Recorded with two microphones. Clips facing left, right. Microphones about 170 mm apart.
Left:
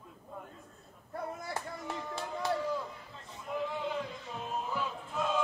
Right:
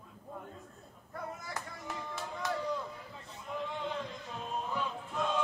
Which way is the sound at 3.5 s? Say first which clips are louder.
Left 3 dB; 5° left (ahead or behind).